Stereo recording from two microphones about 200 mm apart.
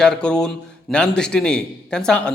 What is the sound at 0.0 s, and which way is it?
A man's voice, 5° left (ahead or behind).